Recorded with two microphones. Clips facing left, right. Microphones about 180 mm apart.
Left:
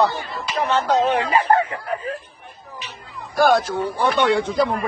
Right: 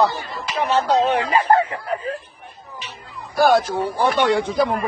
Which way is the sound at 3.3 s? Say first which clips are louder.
Right 1 dB; 5° right (ahead or behind).